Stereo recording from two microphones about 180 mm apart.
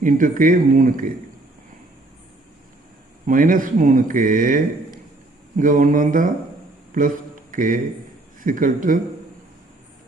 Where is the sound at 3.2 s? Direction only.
50° right (ahead or behind).